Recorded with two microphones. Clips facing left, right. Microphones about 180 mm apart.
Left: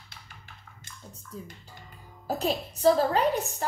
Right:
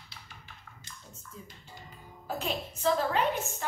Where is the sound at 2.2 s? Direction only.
35° left (ahead or behind).